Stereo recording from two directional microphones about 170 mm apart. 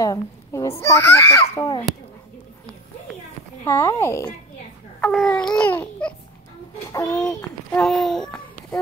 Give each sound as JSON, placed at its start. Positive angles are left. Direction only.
{"t": 0.0, "sound": "a child's voice", "side_deg": 20}
{"t": 3.6, "sound": "speech", "side_deg": 15}
{"t": 7.2, "sound": "speech", "side_deg": 5}